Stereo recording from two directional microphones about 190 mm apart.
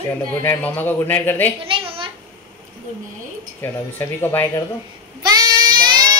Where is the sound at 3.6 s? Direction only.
10° left (ahead or behind).